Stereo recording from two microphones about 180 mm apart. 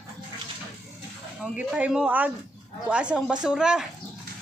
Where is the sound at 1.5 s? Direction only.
5° right (ahead or behind).